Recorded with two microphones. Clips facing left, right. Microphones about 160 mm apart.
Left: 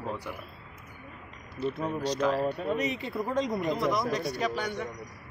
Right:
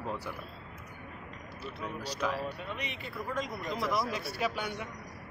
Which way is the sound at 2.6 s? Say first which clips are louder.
Left 10 dB; 40° left (ahead or behind).